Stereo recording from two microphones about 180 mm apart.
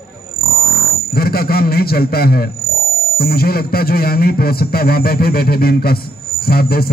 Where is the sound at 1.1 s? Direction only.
55° left (ahead or behind).